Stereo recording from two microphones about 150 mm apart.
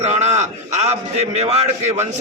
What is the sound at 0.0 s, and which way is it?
A man's voice, 50° right (ahead or behind).